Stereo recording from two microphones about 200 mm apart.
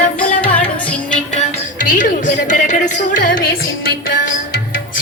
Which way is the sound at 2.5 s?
35° left (ahead or behind).